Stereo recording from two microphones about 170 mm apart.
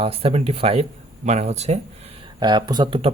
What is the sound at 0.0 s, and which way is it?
Speech, 35° right (ahead or behind).